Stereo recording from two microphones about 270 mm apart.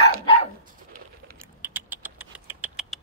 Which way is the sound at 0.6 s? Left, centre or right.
Right.